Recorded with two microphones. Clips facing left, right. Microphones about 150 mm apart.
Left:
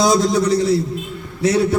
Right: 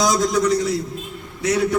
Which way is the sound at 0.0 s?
30° left (ahead or behind).